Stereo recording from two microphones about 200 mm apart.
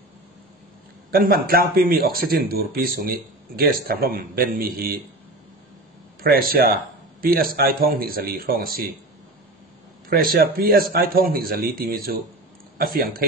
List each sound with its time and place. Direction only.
1.1 s speech: 50° right (ahead or behind)
6.2 s speech: 50° right (ahead or behind)
10.0 s speech: 50° right (ahead or behind)